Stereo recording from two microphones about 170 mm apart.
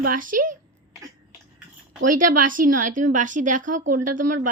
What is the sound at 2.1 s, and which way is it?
A woman's voice, 55° right (ahead or behind).